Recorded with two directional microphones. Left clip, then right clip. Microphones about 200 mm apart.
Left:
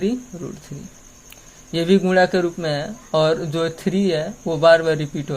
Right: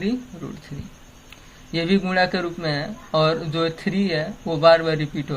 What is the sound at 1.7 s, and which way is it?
Speech, 50° left (ahead or behind).